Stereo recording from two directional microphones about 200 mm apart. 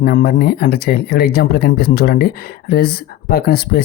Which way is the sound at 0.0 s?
50° left (ahead or behind).